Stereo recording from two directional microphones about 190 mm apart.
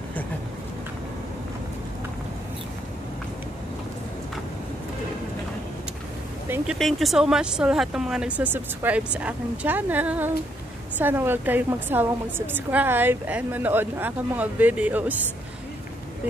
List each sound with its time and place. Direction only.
6.5 s a woman's voice: centre (ahead or behind)